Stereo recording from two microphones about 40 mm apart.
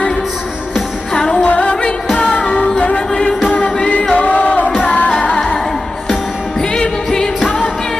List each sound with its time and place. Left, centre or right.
1.1 s music: centre
1.4 s music: left
4.1 s music: left
6.6 s music: left